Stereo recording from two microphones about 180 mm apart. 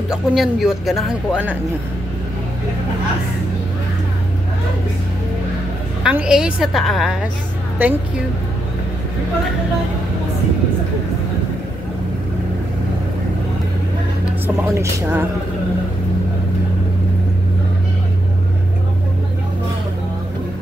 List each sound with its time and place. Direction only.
0.1 s speech: centre (ahead or behind)
6.0 s speech: 5° right (ahead or behind)
7.8 s speech: 10° right (ahead or behind)
14.7 s speech: 15° right (ahead or behind)